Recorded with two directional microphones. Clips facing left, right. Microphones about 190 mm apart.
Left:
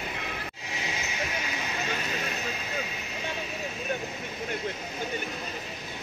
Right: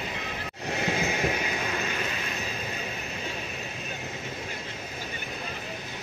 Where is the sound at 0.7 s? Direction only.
60° right (ahead or behind).